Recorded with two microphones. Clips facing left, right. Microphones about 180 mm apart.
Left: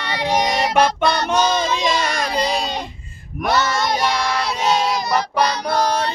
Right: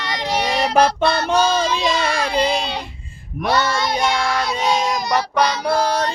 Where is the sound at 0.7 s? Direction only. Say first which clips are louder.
Right 2 dB; 35° right (ahead or behind).